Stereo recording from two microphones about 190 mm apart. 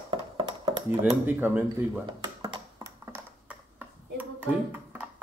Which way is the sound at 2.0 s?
25° right (ahead or behind).